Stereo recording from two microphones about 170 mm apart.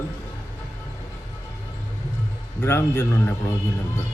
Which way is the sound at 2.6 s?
15° left (ahead or behind).